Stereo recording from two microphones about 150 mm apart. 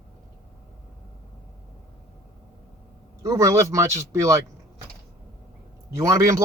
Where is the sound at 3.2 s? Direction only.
20° right (ahead or behind).